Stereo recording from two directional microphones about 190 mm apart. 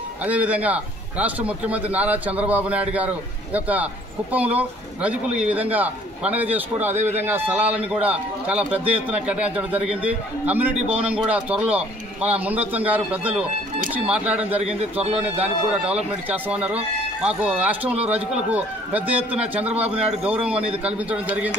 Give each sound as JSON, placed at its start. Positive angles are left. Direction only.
{"t": 0.2, "sound": "a man's voice", "side_deg": -5}
{"t": 14.6, "sound": "a man's voice", "side_deg": -35}
{"t": 16.3, "sound": "a man's voice", "side_deg": -5}